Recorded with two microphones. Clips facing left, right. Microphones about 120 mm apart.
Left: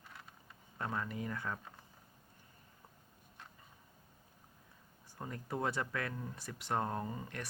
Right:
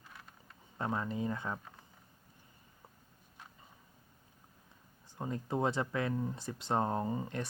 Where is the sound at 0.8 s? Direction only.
25° right (ahead or behind).